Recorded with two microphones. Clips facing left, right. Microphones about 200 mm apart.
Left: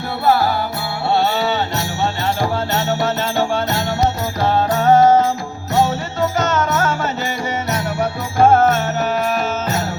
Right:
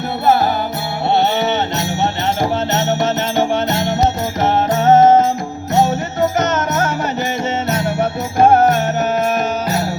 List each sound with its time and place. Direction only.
1.1 s music: 20° right (ahead or behind)
6.4 s music: 20° right (ahead or behind)